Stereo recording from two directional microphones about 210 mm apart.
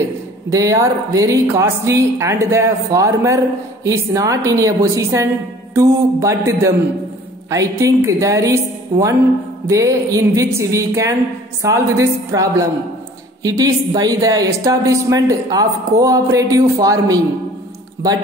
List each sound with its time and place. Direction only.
0.5 s speech: 15° right (ahead or behind)